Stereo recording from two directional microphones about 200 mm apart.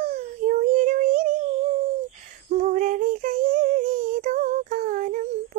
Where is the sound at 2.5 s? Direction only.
40° right (ahead or behind).